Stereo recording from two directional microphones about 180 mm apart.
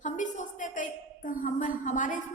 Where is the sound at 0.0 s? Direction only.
45° left (ahead or behind).